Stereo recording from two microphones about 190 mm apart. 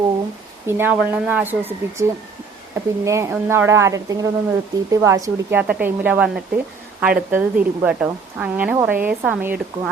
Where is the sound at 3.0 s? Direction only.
15° right (ahead or behind).